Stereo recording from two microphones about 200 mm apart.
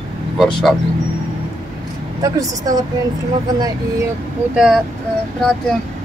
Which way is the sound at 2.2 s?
20° right (ahead or behind).